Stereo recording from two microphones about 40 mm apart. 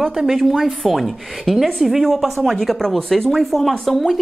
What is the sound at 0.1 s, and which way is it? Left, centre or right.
Speech, centre.